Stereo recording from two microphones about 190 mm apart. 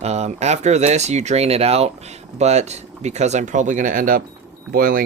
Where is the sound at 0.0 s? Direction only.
35° right (ahead or behind).